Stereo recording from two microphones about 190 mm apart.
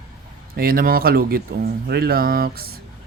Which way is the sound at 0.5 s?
50° right (ahead or behind).